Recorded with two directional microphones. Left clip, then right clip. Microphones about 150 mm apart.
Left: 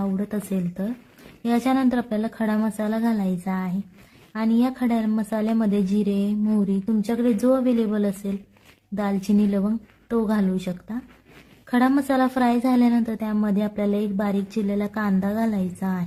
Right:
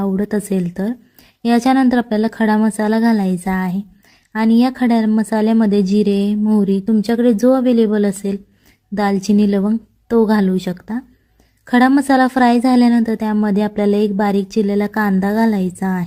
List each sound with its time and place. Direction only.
0.0 s a woman's voice: 35° right (ahead or behind)